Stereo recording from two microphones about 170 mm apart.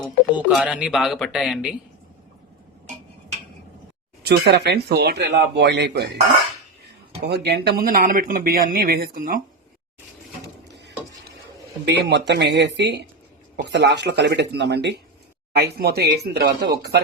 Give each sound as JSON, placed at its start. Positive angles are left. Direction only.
{"t": 0.0, "sound": "speech", "side_deg": -10}
{"t": 4.2, "sound": "speech", "side_deg": -75}
{"t": 7.3, "sound": "speech", "side_deg": -80}
{"t": 11.9, "sound": "speech", "side_deg": -85}
{"t": 15.5, "sound": "speech", "side_deg": -70}